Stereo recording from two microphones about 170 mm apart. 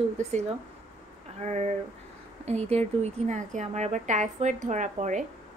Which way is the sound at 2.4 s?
40° right (ahead or behind).